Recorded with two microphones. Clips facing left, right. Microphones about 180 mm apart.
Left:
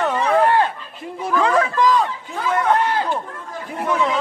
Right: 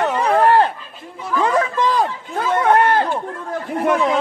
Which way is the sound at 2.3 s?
60° right (ahead or behind).